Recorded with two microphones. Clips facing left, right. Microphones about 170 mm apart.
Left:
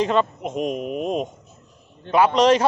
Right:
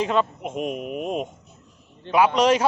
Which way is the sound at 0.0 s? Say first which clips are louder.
Left 2 dB; 5° right (ahead or behind).